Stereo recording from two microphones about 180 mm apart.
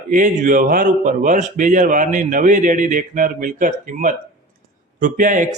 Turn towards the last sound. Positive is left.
turn(degrees=-45)  # may be behind; listen again after turning